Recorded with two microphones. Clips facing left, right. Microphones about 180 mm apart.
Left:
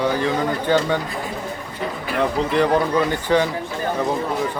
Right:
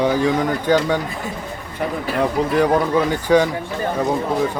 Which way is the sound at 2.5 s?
10° right (ahead or behind).